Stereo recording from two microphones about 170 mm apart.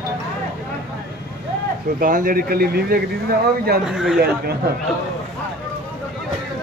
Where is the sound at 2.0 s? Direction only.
55° right (ahead or behind).